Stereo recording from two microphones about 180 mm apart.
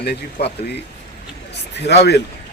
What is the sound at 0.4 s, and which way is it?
Speech, 65° left (ahead or behind).